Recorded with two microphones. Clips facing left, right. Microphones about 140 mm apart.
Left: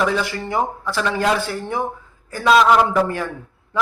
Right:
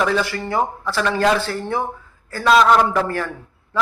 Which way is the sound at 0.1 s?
15° left (ahead or behind).